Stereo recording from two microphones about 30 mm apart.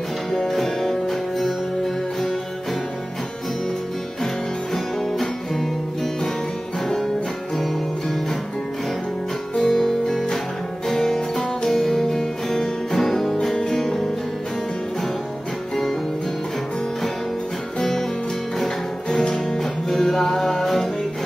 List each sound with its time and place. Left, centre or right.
0.5 s music: centre
4.7 s music: centre
7.5 s music: centre
9.6 s music: centre
15.7 s music: centre
19.0 s music: left
19.6 s music: centre